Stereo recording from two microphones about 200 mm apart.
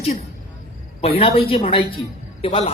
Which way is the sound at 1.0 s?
30° left (ahead or behind).